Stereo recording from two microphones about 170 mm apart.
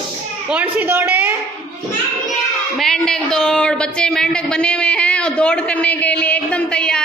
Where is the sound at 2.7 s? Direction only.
5° left (ahead or behind).